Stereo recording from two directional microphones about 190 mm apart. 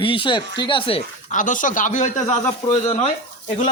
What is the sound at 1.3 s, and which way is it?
A man's voice, 45° left (ahead or behind).